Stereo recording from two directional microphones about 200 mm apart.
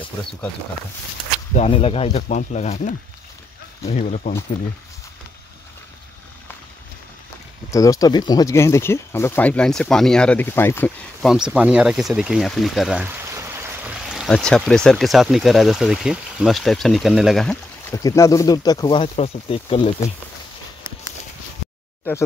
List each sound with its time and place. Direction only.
1.5 s speech: 30° left (ahead or behind)
7.7 s speech: 15° left (ahead or behind)
11.2 s speech: 5° right (ahead or behind)
17.8 s speech: 15° left (ahead or behind)